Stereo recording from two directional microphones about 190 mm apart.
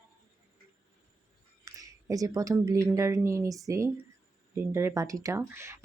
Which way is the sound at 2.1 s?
20° right (ahead or behind).